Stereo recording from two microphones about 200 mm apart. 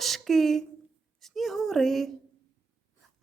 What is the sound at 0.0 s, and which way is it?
Speech, centre (ahead or behind).